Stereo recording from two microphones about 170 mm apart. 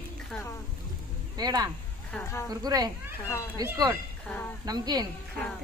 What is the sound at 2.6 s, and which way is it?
Speech, 20° right (ahead or behind).